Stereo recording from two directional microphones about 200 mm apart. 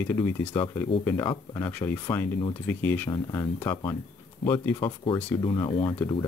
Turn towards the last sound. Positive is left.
turn(degrees=25)  # may be behind; listen again after turning